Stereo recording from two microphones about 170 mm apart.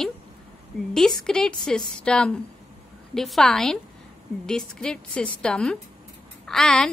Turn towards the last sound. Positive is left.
turn(degrees=5)  # may be behind; listen again after turning